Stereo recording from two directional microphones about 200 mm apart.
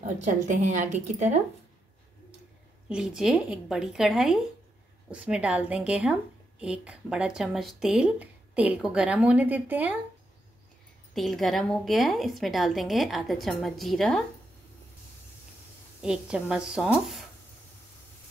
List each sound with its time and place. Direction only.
0.3 s speech: 40° right (ahead or behind)
2.9 s speech: 5° right (ahead or behind)
11.1 s speech: centre (ahead or behind)
16.0 s speech: 5° right (ahead or behind)